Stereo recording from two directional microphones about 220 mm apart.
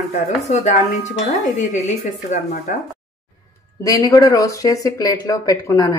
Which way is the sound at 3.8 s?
15° left (ahead or behind).